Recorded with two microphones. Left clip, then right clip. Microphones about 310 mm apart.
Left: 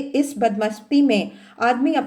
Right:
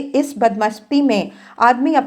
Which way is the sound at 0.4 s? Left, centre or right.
Centre.